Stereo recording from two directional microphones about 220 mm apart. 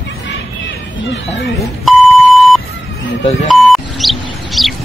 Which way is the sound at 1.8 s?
Centre (ahead or behind).